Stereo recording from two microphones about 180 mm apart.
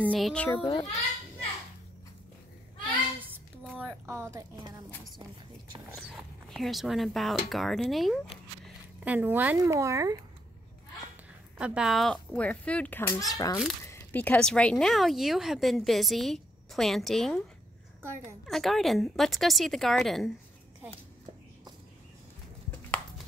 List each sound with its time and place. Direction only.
0.1 s speech: 5° left (ahead or behind)
0.6 s a child's voice: 30° left (ahead or behind)
3.8 s speech: 15° right (ahead or behind)
5.9 s speech: centre (ahead or behind); by 10.1 s 15° right (ahead or behind)
11.5 s a child's voice: 5° right (ahead or behind)
18.4 s speech: centre (ahead or behind)
22.7 s chopping: 5° left (ahead or behind)